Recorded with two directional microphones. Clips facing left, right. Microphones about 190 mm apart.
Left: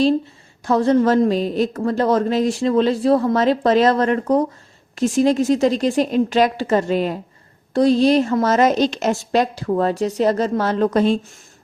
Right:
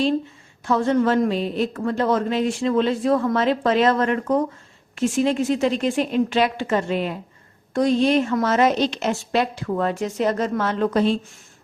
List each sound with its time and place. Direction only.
0.6 s a woman's voice: 35° left (ahead or behind)